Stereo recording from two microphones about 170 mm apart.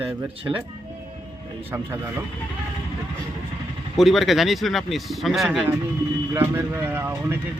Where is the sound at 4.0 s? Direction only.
Centre (ahead or behind).